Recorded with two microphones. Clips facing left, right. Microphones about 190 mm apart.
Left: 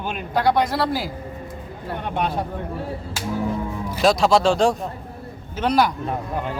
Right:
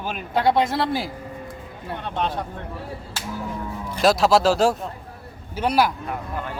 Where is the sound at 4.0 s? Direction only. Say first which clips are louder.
Even; centre (ahead or behind).